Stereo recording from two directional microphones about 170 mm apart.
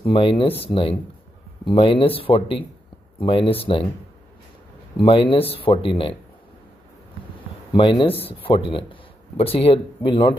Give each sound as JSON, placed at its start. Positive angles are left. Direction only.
{"t": 0.0, "sound": "speech", "side_deg": 30}
{"t": 4.9, "sound": "speech", "side_deg": 30}
{"t": 7.7, "sound": "speech", "side_deg": 30}